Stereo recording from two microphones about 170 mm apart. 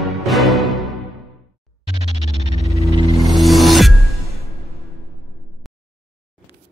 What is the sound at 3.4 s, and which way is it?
Music, centre (ahead or behind).